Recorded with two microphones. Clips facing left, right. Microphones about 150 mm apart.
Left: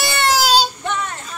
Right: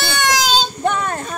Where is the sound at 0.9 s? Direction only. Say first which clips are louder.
Right 5 dB; 50° right (ahead or behind).